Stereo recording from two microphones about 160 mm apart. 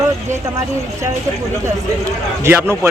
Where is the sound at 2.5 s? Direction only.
15° right (ahead or behind).